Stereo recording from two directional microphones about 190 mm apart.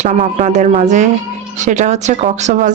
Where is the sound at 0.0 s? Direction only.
40° right (ahead or behind).